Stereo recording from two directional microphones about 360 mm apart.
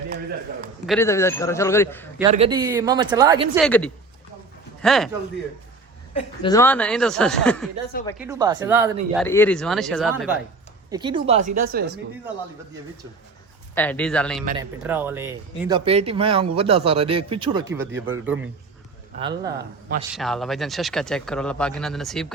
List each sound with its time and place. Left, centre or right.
0.1 s a sound: right
0.9 s a man's voice: centre
2.3 s speech: centre
3.6 s speech: centre
6.1 s speech: centre
8.2 s speech: centre
9.2 s speech: centre
10.9 s a woman's voice: centre
13.7 s speech: centre
17.9 s a man's voice: right
19.2 s speech: centre
20.1 s speech: centre